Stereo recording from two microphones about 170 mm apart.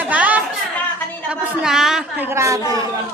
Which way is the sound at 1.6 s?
Centre (ahead or behind).